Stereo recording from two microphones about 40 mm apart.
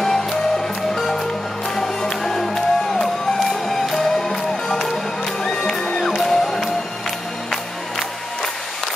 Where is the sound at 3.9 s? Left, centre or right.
Centre.